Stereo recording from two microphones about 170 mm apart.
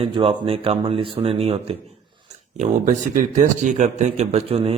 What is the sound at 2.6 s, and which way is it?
Speech, 45° right (ahead or behind).